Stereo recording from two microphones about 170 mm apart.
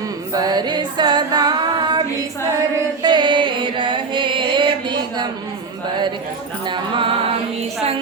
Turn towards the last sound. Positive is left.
turn(degrees=-30)  # may be behind; listen again after turning